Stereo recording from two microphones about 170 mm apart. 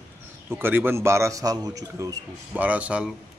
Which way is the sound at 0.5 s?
15° right (ahead or behind).